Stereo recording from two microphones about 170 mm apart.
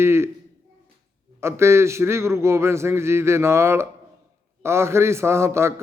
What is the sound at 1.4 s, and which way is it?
A man's voice, 15° right (ahead or behind).